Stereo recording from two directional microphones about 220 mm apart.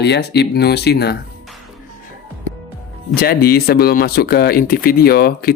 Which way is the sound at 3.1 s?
45° left (ahead or behind).